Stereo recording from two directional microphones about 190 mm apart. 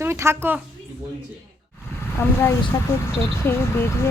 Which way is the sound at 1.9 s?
10° left (ahead or behind).